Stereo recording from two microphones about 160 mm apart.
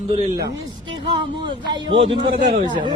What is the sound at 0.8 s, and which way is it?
Speech, 30° right (ahead or behind).